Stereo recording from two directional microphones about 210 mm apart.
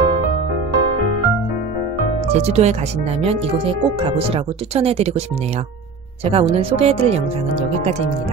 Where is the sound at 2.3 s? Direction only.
30° right (ahead or behind).